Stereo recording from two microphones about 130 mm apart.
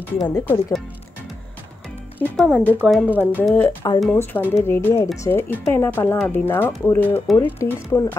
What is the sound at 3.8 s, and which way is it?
Speech, 30° left (ahead or behind).